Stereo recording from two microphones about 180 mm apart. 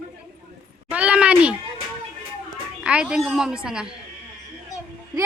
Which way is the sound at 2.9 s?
5° right (ahead or behind).